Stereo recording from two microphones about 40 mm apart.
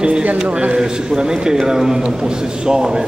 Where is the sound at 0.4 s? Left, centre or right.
Right.